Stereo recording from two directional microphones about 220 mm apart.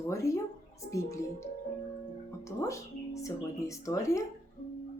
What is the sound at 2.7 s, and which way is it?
A woman's voice, 15° left (ahead or behind).